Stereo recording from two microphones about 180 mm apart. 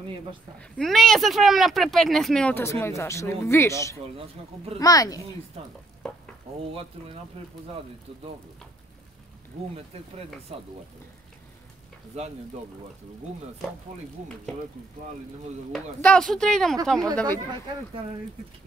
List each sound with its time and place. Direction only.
0.6 s speech: 5° left (ahead or behind); by 5.2 s 20° left (ahead or behind)
7.4 s speech: 35° right (ahead or behind)
10.5 s speech: 35° right (ahead or behind)
12.2 s speech: 40° right (ahead or behind)
15.7 s speech: 5° left (ahead or behind)
17.3 s speech: 25° right (ahead or behind)